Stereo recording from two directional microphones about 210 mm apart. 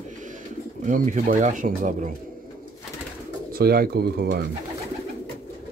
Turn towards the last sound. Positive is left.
turn(degrees=-50)  # may be behind; listen again after turning